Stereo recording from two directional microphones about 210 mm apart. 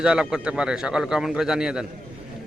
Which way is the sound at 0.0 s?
5° right (ahead or behind).